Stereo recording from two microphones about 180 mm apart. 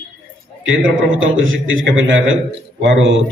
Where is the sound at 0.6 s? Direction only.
90° right.